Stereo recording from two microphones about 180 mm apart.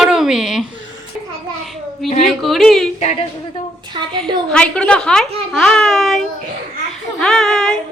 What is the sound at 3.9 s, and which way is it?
Speech, 25° right (ahead or behind).